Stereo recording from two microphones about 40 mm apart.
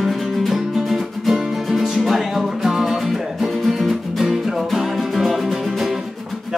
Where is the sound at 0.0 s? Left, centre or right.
Centre.